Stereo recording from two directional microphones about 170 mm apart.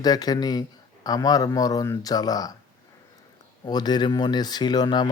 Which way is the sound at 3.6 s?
25° left (ahead or behind).